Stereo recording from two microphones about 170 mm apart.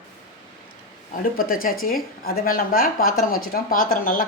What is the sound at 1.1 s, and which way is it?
A woman's voice, 60° left (ahead or behind).